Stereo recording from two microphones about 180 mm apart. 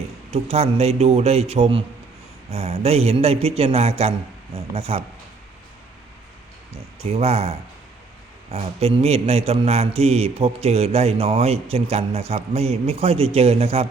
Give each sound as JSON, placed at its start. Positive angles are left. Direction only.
{"t": 0.3, "sound": "a man's voice", "side_deg": -35}
{"t": 7.0, "sound": "a man's voice", "side_deg": -35}